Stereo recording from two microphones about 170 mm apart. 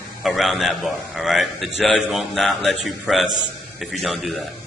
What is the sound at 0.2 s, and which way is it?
A man's voice, centre (ahead or behind).